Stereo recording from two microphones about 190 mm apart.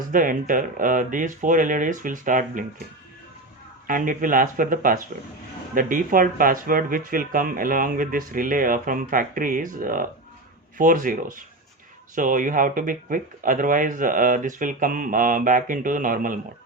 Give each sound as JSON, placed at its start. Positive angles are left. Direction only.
{"t": 0.1, "sound": "speech", "side_deg": -45}
{"t": 3.8, "sound": "speech", "side_deg": -45}